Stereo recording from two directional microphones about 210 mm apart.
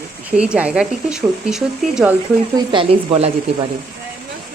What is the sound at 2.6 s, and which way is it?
Speech, 25° right (ahead or behind).